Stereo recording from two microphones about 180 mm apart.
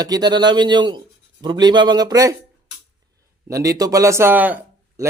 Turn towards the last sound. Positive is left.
turn(degrees=-10)  # may be behind; listen again after turning